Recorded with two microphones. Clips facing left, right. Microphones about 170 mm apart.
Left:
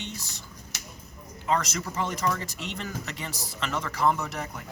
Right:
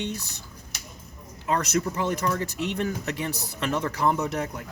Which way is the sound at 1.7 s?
60° right (ahead or behind).